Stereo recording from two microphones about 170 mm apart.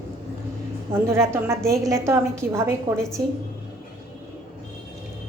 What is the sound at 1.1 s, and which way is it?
Speech, 15° right (ahead or behind).